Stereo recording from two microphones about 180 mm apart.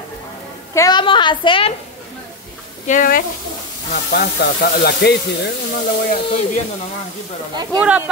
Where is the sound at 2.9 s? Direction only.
50° left (ahead or behind); by 5.2 s 65° left (ahead or behind).